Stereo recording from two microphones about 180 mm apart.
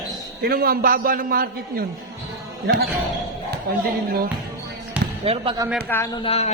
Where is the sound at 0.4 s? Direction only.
55° right (ahead or behind).